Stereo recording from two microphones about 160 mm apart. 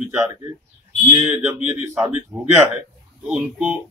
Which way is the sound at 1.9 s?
15° right (ahead or behind).